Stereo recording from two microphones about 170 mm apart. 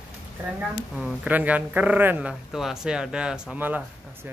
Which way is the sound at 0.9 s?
5° right (ahead or behind).